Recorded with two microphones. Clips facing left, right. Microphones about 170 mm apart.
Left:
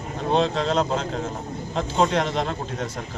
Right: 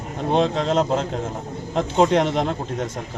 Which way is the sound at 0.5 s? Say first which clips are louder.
Right 3 dB; 15° right (ahead or behind).